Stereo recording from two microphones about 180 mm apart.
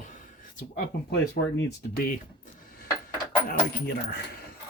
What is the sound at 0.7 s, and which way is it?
Speech, 60° left (ahead or behind).